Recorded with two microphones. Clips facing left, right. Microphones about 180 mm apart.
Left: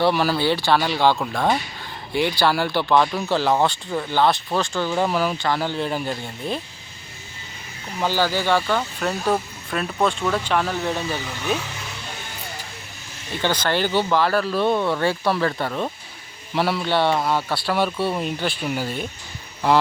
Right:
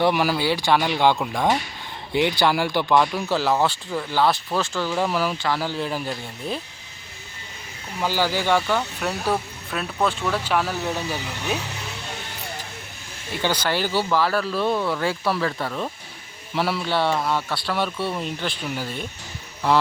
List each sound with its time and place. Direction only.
0.0 s speech: 15° right (ahead or behind)
8.0 s speech: 10° right (ahead or behind)
13.4 s speech: 10° right (ahead or behind)
17.9 s speech: 25° left (ahead or behind)
18.2 s speech: 5° left (ahead or behind)